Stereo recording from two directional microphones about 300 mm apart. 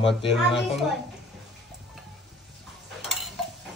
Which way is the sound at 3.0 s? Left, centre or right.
Centre.